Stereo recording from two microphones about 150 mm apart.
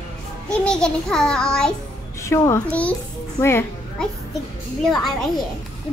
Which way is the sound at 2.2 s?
20° left (ahead or behind).